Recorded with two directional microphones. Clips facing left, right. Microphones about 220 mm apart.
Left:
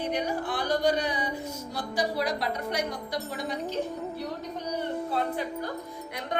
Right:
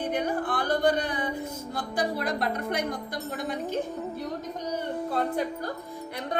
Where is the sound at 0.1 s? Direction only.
55° right (ahead or behind).